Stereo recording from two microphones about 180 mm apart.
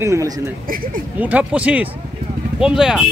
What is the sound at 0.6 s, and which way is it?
Speech, 50° right (ahead or behind).